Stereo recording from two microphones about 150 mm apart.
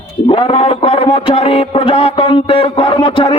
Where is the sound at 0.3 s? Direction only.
35° left (ahead or behind).